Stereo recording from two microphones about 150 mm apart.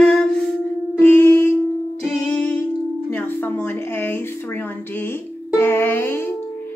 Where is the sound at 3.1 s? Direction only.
15° left (ahead or behind).